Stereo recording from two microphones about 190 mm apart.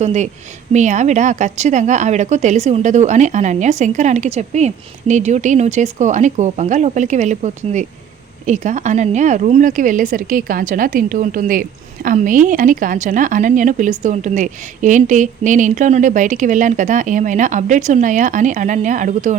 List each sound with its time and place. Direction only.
0.0 s a woman's voice: 35° right (ahead or behind)